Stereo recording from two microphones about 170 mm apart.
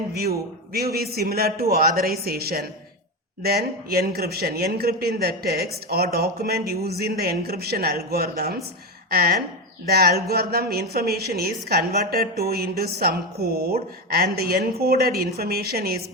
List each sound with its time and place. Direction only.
0.1 s a woman's voice: 65° right (ahead or behind)